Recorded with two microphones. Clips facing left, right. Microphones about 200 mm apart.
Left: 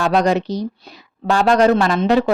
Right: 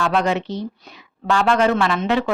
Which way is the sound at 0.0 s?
40° left (ahead or behind).